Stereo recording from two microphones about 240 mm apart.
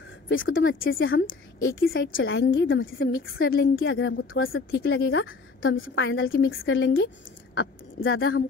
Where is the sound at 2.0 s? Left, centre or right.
Left.